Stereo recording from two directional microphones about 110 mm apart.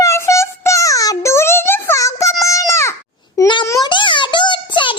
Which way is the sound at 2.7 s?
25° left (ahead or behind).